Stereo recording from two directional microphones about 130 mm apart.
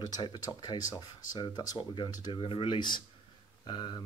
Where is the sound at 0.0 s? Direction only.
30° left (ahead or behind).